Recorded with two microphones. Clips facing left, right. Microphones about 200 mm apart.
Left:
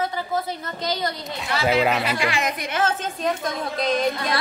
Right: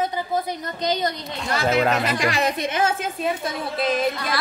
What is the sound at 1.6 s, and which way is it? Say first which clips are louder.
Speech: even; 5° left (ahead or behind).